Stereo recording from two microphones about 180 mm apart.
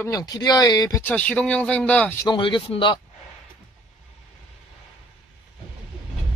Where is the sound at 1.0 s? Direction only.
10° left (ahead or behind).